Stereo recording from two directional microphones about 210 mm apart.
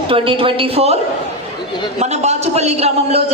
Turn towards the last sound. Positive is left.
turn(degrees=-30)  # may be behind; listen again after turning